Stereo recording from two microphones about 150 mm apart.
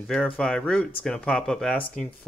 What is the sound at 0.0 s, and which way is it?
Speech, 5° left (ahead or behind).